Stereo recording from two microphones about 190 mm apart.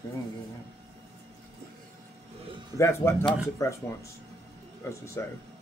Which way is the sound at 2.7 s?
15° left (ahead or behind).